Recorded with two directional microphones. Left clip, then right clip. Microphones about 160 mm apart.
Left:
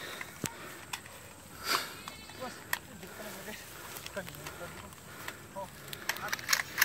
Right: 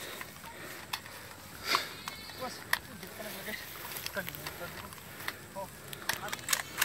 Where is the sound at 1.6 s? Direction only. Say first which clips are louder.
Right 1 dB; 10° left (ahead or behind).